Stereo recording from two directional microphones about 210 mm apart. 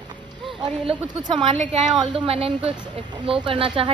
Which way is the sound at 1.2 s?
20° right (ahead or behind).